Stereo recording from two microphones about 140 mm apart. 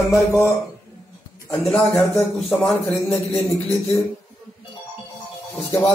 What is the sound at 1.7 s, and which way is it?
A man's voice, 10° left (ahead or behind).